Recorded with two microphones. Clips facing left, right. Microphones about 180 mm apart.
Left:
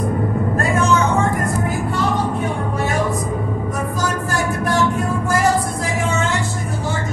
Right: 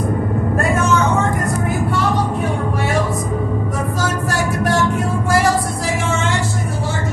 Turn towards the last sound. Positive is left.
turn(degrees=-90)